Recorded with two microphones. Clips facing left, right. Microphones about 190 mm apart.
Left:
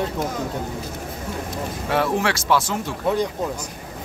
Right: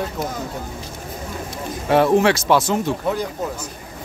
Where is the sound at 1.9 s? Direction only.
20° right (ahead or behind).